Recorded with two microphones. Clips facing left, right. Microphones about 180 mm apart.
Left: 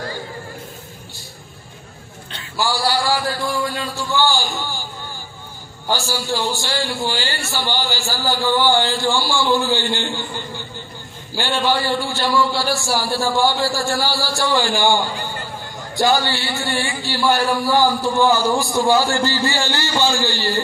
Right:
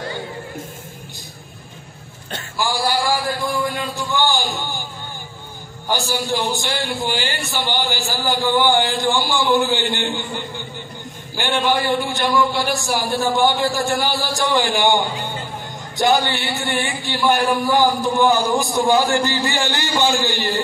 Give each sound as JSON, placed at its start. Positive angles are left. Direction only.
{"t": 2.6, "sound": "a man's voice", "side_deg": -15}
{"t": 6.2, "sound": "a man's voice", "side_deg": -20}
{"t": 11.3, "sound": "a man's voice", "side_deg": -20}